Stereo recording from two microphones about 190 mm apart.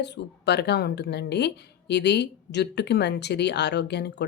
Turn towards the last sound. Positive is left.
turn(degrees=60)  # may be behind; listen again after turning